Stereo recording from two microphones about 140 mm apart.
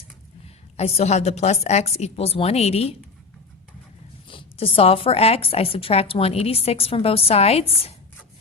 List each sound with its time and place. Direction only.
0.4 s a woman's voice: 50° left (ahead or behind)
4.3 s a woman's voice: 40° left (ahead or behind)